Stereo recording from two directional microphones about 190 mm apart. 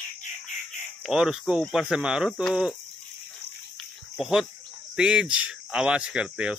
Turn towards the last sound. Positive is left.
turn(degrees=-5)  # may be behind; listen again after turning